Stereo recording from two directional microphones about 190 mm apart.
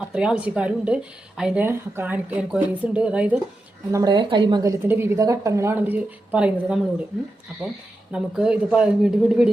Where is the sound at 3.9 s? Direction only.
20° right (ahead or behind).